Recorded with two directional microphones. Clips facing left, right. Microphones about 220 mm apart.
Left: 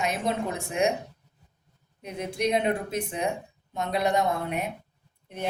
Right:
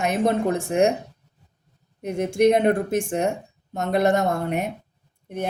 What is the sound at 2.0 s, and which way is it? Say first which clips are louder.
Speech: right 10 dB; 50° right (ahead or behind).